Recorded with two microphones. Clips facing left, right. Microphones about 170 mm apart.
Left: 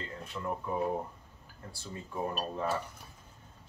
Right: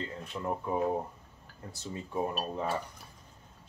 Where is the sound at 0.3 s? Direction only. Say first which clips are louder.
Right 2 dB; 20° right (ahead or behind).